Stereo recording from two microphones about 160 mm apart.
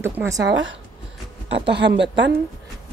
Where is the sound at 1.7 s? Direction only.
90° right.